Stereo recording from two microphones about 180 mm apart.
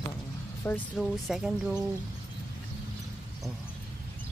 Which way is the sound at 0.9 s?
Centre (ahead or behind).